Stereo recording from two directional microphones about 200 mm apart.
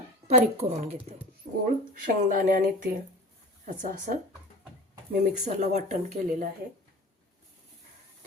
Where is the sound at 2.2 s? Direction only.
40° right (ahead or behind).